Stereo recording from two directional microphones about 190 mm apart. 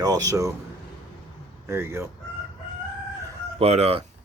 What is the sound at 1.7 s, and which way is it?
Speech, 15° right (ahead or behind).